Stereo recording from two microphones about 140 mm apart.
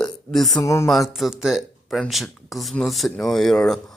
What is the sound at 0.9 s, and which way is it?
Speech, centre (ahead or behind).